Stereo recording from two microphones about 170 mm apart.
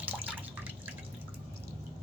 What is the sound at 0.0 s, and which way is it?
Drip, 10° right (ahead or behind).